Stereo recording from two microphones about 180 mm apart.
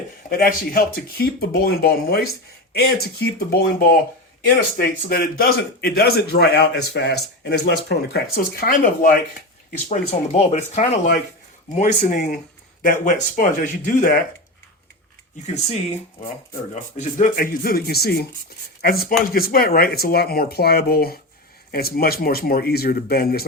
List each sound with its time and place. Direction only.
0.3 s a man's voice: 50° left (ahead or behind)
8.6 s speech: 50° left (ahead or behind)
9.9 s speech: 40° left (ahead or behind)
15.4 s speech: 40° left (ahead or behind)
17.0 s a man's voice: 45° left (ahead or behind)